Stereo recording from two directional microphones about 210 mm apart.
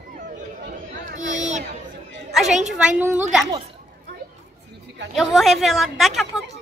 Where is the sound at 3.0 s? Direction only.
5° right (ahead or behind).